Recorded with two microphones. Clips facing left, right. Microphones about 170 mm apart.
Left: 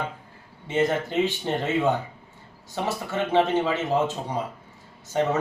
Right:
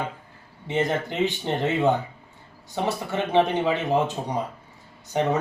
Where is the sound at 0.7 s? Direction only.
15° right (ahead or behind).